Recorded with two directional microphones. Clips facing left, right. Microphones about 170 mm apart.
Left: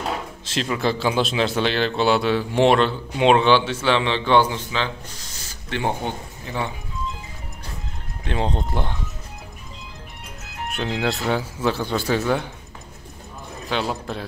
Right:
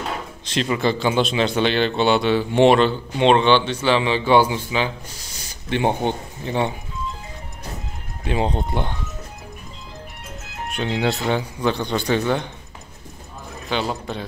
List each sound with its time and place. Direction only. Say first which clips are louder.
0.5 s speech: right 2 dB; centre (ahead or behind); by 6.7 s 20° right (ahead or behind)
8.2 s speech: right 2 dB; 5° right (ahead or behind)
10.7 s speech: right 2 dB; centre (ahead or behind)
13.7 s speech: right 1 dB; centre (ahead or behind)